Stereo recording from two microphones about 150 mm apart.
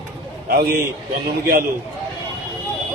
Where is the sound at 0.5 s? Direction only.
90° right.